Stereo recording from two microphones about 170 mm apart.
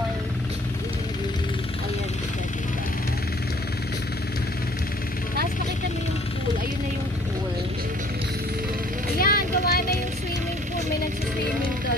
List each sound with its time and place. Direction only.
9.2 s vehicle: 60° left (ahead or behind)